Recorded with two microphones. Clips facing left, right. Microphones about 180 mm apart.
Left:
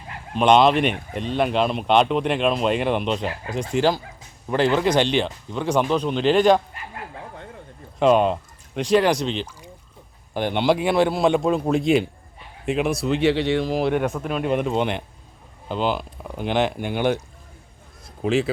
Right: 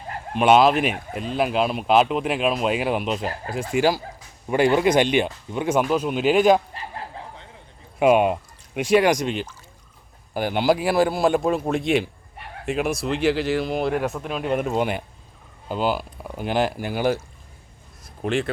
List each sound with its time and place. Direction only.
0.3 s speech: 5° right (ahead or behind)
6.7 s bow-wow: 30° right (ahead or behind)
7.9 s speech: 10° right (ahead or behind)
12.4 s a sound: 70° right (ahead or behind)
12.6 s speech: centre (ahead or behind)